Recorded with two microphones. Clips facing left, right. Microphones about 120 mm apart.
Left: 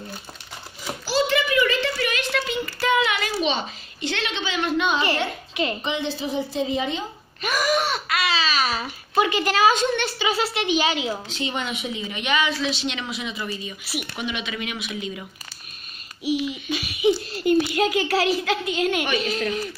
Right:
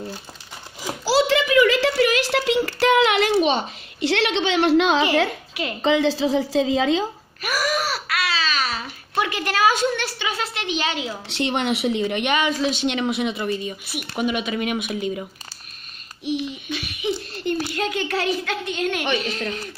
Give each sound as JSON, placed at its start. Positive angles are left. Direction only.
{"t": 1.3, "sound": "a sound", "side_deg": -90}
{"t": 5.5, "sound": "a woman's voice", "side_deg": -5}
{"t": 5.8, "sound": "a woman's voice", "side_deg": -90}
{"t": 7.4, "sound": "babbling", "side_deg": -5}
{"t": 11.2, "sound": "speech", "side_deg": -75}
{"t": 16.7, "sound": "a sound", "side_deg": 10}
{"t": 17.7, "sound": "a woman's voice", "side_deg": 5}